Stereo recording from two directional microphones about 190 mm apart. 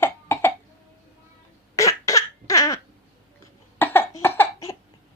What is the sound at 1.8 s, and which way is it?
Cough, 15° left (ahead or behind).